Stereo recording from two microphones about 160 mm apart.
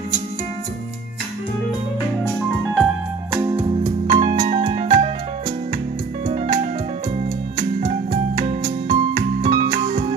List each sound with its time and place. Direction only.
2.7 s music: centre (ahead or behind)
3.6 s music: 30° right (ahead or behind)
6.2 s music: 40° right (ahead or behind)
7.8 s music: 50° right (ahead or behind)